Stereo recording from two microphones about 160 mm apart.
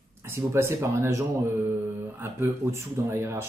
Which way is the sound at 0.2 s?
15° right (ahead or behind).